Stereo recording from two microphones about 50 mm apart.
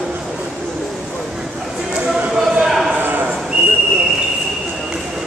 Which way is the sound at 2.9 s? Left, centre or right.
Right.